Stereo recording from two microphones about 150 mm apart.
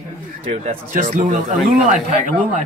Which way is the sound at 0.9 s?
60° right (ahead or behind).